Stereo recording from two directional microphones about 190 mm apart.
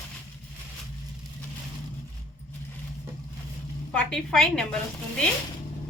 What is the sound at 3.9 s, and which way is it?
Speech, 5° left (ahead or behind).